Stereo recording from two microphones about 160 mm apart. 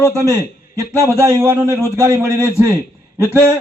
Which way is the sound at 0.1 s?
15° right (ahead or behind).